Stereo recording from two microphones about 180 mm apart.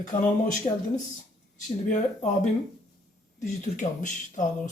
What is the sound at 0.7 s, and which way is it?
Speech, 35° left (ahead or behind).